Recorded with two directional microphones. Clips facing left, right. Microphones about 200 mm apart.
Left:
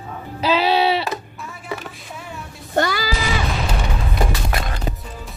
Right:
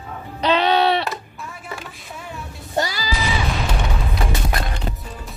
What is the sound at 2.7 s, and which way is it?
Music, 55° left (ahead or behind).